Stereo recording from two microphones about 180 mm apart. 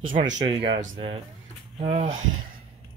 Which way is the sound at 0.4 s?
30° right (ahead or behind).